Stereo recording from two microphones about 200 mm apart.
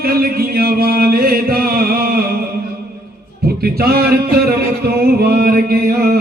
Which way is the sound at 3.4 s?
50° right (ahead or behind).